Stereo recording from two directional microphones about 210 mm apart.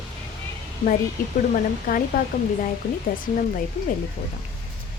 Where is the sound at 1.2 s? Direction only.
40° left (ahead or behind).